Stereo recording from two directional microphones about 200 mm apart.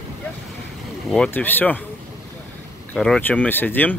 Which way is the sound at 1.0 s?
5° left (ahead or behind).